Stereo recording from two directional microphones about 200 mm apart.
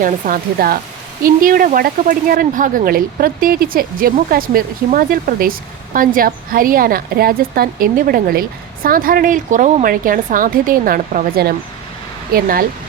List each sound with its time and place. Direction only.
0.0 s speech: 45° right (ahead or behind)